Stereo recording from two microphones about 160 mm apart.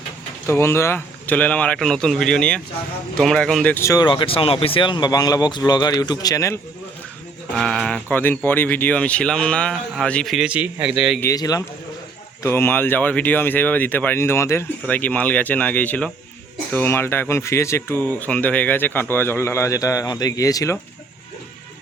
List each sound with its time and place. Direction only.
0.4 s speech: 15° left (ahead or behind)
7.5 s speech: centre (ahead or behind)
11.2 s speech: 20° left (ahead or behind)